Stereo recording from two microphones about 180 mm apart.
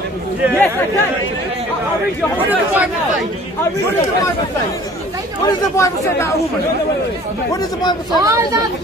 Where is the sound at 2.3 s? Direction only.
10° right (ahead or behind).